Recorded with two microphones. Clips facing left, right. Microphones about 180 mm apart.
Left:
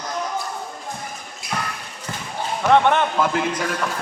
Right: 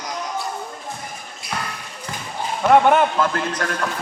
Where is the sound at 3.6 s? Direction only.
10° left (ahead or behind).